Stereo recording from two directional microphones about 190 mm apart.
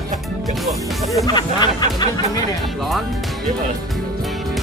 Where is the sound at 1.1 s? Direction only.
20° left (ahead or behind).